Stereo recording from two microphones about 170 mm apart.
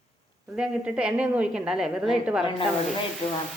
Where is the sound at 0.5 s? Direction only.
5° right (ahead or behind).